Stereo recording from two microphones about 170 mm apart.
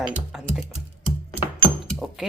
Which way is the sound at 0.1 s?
5° right (ahead or behind).